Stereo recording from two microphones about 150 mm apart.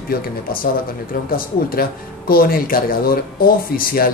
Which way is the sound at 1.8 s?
80° left.